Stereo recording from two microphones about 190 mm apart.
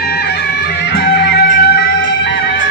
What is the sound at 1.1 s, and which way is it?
Music, 65° left (ahead or behind).